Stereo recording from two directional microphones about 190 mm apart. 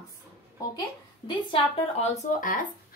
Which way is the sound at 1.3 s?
30° left (ahead or behind).